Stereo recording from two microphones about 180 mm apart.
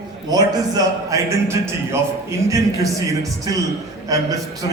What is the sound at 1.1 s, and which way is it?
Speech, 15° right (ahead or behind).